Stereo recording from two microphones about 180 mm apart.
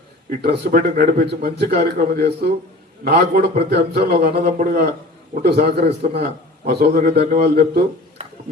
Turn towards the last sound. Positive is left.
turn(degrees=-55)  # may be behind; listen again after turning